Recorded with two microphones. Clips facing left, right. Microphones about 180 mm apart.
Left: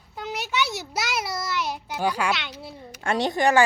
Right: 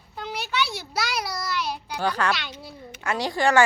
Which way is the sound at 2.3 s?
25° left (ahead or behind).